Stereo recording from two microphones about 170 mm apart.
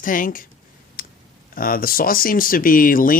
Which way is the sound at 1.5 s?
55° left (ahead or behind).